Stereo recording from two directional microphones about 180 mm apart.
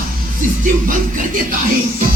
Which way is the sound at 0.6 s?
50° right (ahead or behind).